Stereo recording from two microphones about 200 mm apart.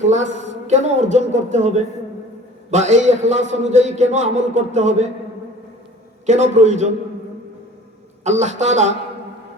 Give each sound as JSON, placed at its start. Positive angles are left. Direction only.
{"t": 0.7, "sound": "a man's voice", "side_deg": -35}
{"t": 6.2, "sound": "a man's voice", "side_deg": -35}
{"t": 8.2, "sound": "a man's voice", "side_deg": -35}